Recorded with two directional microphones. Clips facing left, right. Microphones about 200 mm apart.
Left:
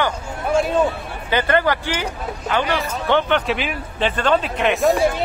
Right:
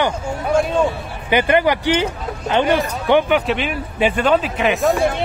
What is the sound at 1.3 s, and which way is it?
Speech, 15° right (ahead or behind).